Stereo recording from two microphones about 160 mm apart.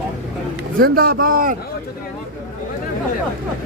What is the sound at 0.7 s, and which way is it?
Speech, 65° right (ahead or behind).